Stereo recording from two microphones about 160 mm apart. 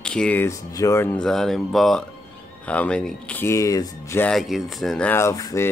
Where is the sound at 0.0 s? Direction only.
5° left (ahead or behind).